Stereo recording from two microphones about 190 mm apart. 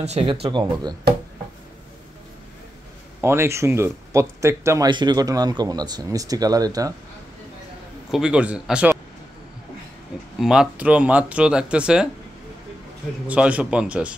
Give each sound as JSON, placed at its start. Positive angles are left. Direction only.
{"t": 0.0, "sound": "speech", "side_deg": -30}
{"t": 3.2, "sound": "speech", "side_deg": -15}
{"t": 8.1, "sound": "speech", "side_deg": -5}
{"t": 10.4, "sound": "speech", "side_deg": -5}
{"t": 13.3, "sound": "speech", "side_deg": -5}